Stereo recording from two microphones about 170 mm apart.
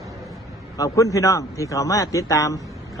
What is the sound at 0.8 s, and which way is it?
A man's voice, 20° left (ahead or behind).